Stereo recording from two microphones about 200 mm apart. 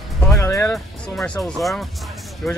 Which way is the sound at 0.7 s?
Centre (ahead or behind).